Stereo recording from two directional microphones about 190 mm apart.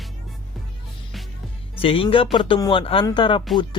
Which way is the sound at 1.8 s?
30° left (ahead or behind).